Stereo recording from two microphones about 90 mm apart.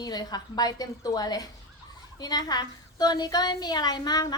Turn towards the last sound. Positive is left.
turn(degrees=45)  # may be behind; listen again after turning